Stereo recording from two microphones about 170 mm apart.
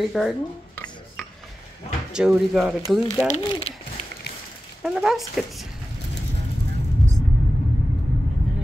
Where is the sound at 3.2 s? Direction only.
40° left (ahead or behind).